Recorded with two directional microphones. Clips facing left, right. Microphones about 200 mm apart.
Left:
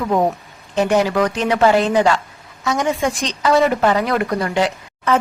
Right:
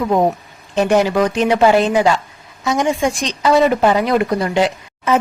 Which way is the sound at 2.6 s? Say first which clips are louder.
Right 2 dB; 25° right (ahead or behind).